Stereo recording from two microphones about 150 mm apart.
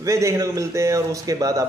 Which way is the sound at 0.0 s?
20° right (ahead or behind).